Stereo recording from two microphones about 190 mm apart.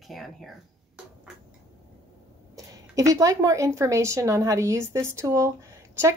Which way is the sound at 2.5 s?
15° right (ahead or behind).